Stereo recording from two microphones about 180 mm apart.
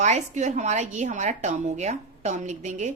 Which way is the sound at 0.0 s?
40° right (ahead or behind).